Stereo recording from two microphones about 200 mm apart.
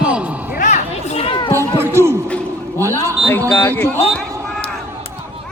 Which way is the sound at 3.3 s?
10° left (ahead or behind).